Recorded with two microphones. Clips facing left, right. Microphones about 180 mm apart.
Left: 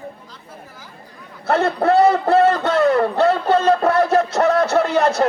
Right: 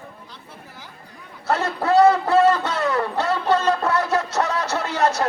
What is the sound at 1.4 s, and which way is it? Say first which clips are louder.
A man's voice: left 5 dB; 60° left (ahead or behind).